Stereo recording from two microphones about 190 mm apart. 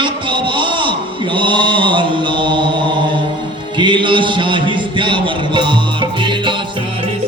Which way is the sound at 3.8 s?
25° right (ahead or behind).